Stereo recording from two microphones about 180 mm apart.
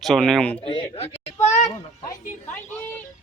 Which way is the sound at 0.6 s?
30° left (ahead or behind).